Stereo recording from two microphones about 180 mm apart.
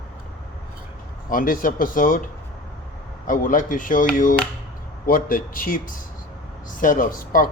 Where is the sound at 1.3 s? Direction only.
50° left (ahead or behind).